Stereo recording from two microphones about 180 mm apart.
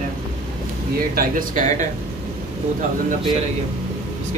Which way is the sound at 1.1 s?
50° right (ahead or behind).